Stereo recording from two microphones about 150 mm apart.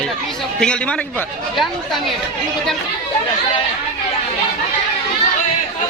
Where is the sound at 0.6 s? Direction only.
5° left (ahead or behind).